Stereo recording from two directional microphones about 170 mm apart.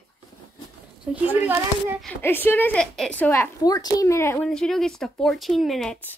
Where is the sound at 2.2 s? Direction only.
10° left (ahead or behind).